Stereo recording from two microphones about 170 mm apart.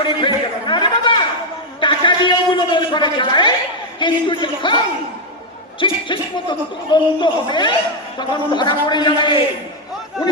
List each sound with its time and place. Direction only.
0.0 s chatter: 30° left (ahead or behind)
1.8 s a sound: 30° left (ahead or behind)
4.0 s a man's voice: 30° left (ahead or behind)
5.8 s a man's voice: 25° left (ahead or behind)